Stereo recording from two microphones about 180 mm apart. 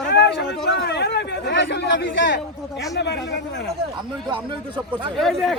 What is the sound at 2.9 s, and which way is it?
Speech, 70° left (ahead or behind).